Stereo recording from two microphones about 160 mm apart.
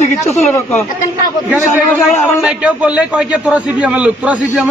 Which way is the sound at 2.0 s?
Centre (ahead or behind).